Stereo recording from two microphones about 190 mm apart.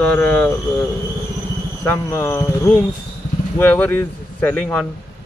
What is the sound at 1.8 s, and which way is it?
Speech, 15° left (ahead or behind).